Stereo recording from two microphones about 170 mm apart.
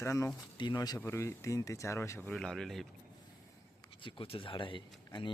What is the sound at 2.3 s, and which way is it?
Speech, 5° left (ahead or behind).